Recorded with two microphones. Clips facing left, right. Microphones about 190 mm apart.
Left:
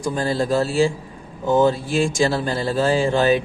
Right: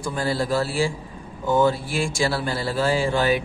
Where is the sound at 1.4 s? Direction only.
20° left (ahead or behind).